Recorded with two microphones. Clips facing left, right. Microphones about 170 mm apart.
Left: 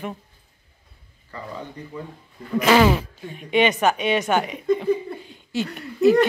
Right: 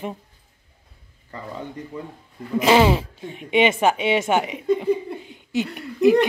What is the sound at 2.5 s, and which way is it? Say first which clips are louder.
A woman's voice: even; 20° right (ahead or behind).